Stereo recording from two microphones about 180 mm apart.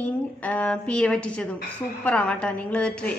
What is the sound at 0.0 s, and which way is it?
A woman's voice, 10° left (ahead or behind).